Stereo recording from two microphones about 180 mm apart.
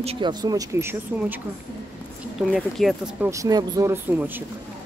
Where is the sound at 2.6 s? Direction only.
Centre (ahead or behind).